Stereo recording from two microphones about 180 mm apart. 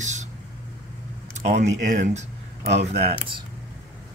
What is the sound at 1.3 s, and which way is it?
Speech, 40° right (ahead or behind).